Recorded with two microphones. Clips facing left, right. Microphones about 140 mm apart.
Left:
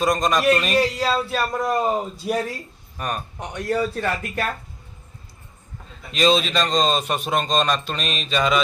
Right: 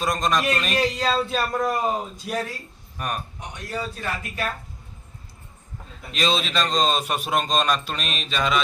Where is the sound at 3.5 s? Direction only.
60° left (ahead or behind).